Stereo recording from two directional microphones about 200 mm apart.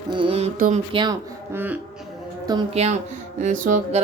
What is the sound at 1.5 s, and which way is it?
Speech, 10° right (ahead or behind).